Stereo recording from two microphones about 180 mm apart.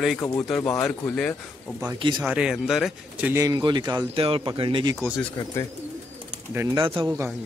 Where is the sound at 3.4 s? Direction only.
25° right (ahead or behind).